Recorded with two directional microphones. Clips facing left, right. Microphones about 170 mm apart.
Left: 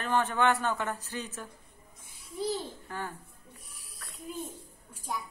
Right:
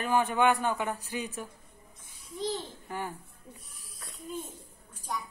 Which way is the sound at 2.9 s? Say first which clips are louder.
Right 3 dB; 15° right (ahead or behind).